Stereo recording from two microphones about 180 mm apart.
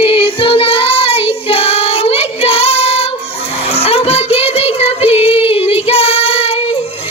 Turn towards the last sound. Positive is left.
turn(degrees=35)  # may be behind; listen again after turning